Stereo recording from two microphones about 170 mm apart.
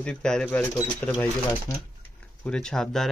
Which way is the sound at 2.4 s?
5° left (ahead or behind).